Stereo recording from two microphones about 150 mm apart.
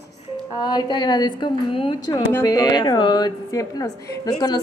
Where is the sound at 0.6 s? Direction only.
30° left (ahead or behind).